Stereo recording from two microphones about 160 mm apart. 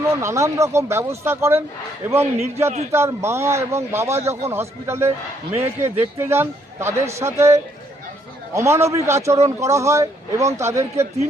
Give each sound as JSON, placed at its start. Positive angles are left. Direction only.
{"t": 0.2, "sound": "speech", "side_deg": -20}